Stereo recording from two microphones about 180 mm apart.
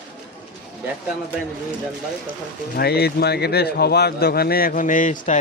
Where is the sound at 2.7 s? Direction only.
60° left (ahead or behind).